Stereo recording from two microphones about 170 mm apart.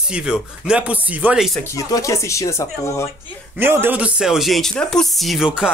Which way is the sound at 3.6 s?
15° right (ahead or behind).